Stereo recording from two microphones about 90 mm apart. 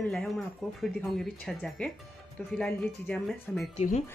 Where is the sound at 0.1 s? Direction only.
5° left (ahead or behind).